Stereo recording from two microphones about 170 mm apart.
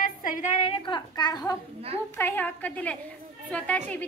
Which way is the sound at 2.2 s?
10° left (ahead or behind).